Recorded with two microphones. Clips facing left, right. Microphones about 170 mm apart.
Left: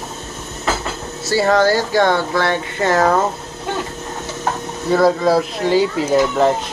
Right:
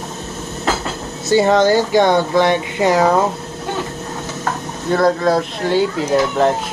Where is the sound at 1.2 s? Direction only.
20° right (ahead or behind).